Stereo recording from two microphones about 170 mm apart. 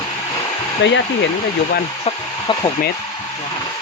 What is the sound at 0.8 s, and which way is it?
Speech, 90° left.